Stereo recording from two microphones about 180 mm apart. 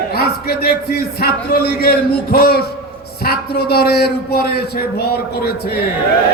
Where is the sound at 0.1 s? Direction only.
60° left (ahead or behind).